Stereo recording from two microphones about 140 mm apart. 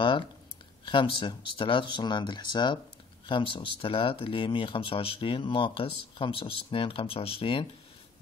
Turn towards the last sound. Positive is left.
turn(degrees=40)  # may be behind; listen again after turning